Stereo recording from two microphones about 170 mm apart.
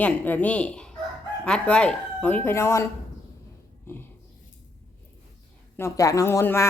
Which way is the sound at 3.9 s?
15° left (ahead or behind).